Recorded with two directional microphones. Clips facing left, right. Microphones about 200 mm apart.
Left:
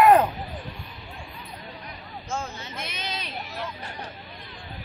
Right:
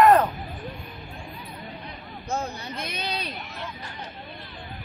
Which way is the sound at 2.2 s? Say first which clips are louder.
Right 3 dB; 35° right (ahead or behind).